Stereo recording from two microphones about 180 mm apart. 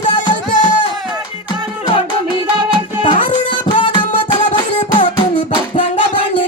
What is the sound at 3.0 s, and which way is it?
Music, 25° left (ahead or behind).